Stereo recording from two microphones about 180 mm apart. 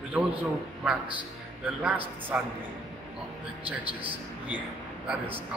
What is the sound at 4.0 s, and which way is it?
Speech, 10° right (ahead or behind).